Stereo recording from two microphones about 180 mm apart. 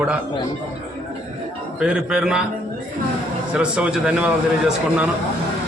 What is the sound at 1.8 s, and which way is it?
Speech, 5° right (ahead or behind).